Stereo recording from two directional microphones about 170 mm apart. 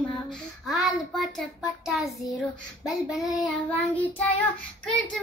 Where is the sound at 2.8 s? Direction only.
Centre (ahead or behind).